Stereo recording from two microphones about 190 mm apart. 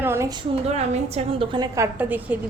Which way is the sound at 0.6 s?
35° right (ahead or behind).